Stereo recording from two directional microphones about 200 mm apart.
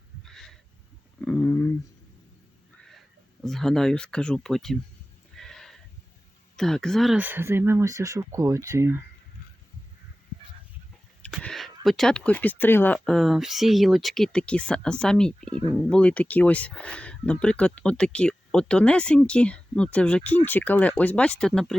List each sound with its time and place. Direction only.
0.3 s a sound: centre (ahead or behind)
1.2 s speech: 10° left (ahead or behind)
3.4 s speech: centre (ahead or behind)
5.4 s a sound: centre (ahead or behind)
6.6 s speech: centre (ahead or behind); by 9.0 s 15° right (ahead or behind)
11.2 s speech: centre (ahead or behind)